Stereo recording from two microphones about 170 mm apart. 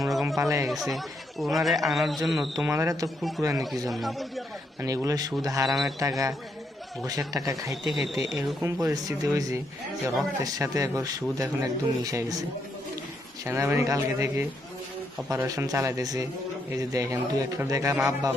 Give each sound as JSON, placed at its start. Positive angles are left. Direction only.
{"t": 0.0, "sound": "a sound", "side_deg": 0}
{"t": 0.3, "sound": "a man's voice", "side_deg": -20}
{"t": 0.7, "sound": "speech", "side_deg": 0}
{"t": 2.6, "sound": "speech", "side_deg": -15}
{"t": 3.4, "sound": "speech", "side_deg": 0}
{"t": 4.8, "sound": "a man's voice", "side_deg": -20}
{"t": 5.6, "sound": "speech", "side_deg": 0}
{"t": 6.0, "sound": "a man's voice", "side_deg": -20}
{"t": 7.3, "sound": "a man's voice", "side_deg": -20}
{"t": 7.9, "sound": "speech", "side_deg": 0}
{"t": 8.6, "sound": "a man's voice", "side_deg": -20}